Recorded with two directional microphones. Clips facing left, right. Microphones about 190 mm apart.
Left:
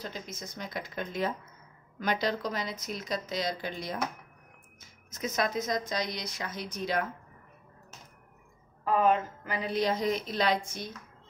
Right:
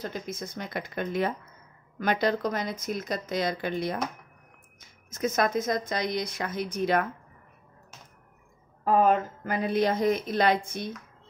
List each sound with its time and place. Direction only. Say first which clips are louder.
0.0 s speech: right 6 dB; 55° right (ahead or behind)
5.1 s speech: right 5 dB; 50° right (ahead or behind)
8.8 s speech: right 3 dB; 40° right (ahead or behind)